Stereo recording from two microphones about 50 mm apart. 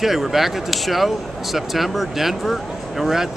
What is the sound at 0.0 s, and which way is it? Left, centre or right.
Speech, centre.